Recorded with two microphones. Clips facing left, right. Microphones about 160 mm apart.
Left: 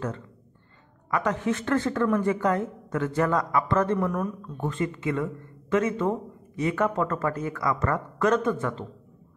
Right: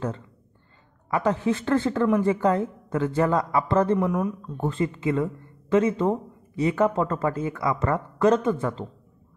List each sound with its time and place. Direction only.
1.1 s speech: 30° right (ahead or behind)
4.0 s speech: 15° right (ahead or behind)
4.6 s speech: 30° right (ahead or behind)